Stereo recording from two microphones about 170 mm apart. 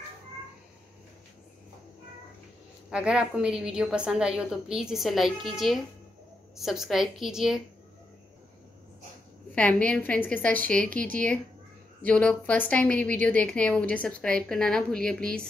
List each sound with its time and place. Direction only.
2.9 s a woman's voice: 5° right (ahead or behind)
9.6 s a woman's voice: 5° left (ahead or behind)